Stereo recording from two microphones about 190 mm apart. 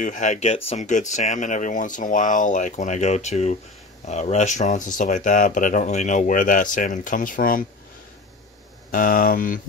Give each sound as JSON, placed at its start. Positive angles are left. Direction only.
{"t": 0.0, "sound": "speech", "side_deg": 40}
{"t": 8.9, "sound": "speech", "side_deg": 50}